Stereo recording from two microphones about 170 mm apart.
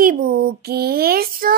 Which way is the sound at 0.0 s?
55° right (ahead or behind).